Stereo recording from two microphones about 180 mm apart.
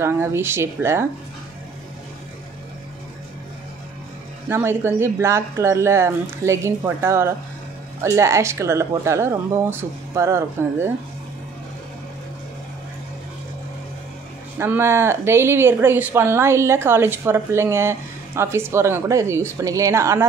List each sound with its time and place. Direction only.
0.0 s speech: 15° right (ahead or behind)
4.5 s speech: 15° right (ahead or behind)
14.6 s speech: 15° right (ahead or behind)